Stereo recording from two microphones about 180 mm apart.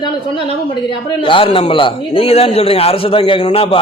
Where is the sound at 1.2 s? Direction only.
30° left (ahead or behind).